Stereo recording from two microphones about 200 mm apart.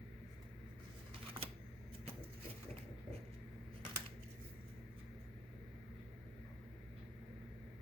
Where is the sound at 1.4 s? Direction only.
25° right (ahead or behind).